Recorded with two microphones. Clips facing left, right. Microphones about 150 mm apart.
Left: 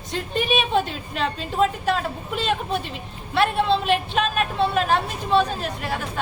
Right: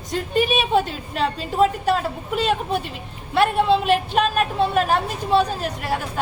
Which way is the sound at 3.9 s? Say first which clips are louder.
Right 3 dB; 45° right (ahead or behind).